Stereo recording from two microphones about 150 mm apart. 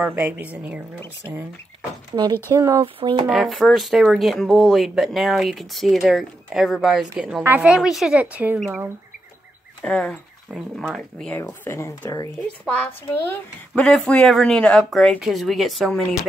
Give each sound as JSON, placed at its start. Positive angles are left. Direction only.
{"t": 0.0, "sound": "a woman's voice", "side_deg": -10}
{"t": 2.5, "sound": "speech", "side_deg": -20}
{"t": 3.0, "sound": "speech", "side_deg": -35}
{"t": 3.3, "sound": "speech", "side_deg": 0}
{"t": 12.6, "sound": "speech", "side_deg": 10}